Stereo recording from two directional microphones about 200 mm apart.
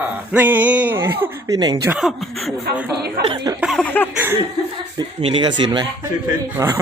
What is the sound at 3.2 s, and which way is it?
Speech, 50° right (ahead or behind).